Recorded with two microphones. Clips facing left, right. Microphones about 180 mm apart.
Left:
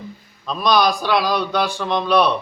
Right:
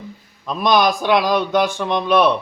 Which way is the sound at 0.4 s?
20° right (ahead or behind).